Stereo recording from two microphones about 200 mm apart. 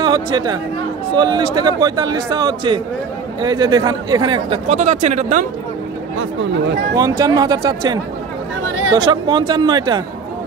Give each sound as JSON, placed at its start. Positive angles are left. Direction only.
{"t": 0.0, "sound": "a man's voice", "side_deg": -20}
{"t": 4.6, "sound": "speech", "side_deg": -35}
{"t": 7.0, "sound": "a man's voice", "side_deg": -20}